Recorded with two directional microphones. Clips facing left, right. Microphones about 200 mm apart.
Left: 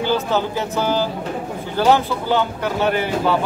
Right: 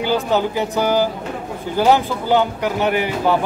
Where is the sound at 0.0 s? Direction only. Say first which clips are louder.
Right 1 dB; 15° right (ahead or behind).